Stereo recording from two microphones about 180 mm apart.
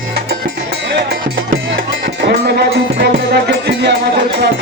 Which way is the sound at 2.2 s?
65° right (ahead or behind).